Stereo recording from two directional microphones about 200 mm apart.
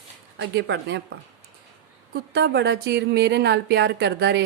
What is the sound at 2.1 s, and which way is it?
A woman's voice, 55° right (ahead or behind).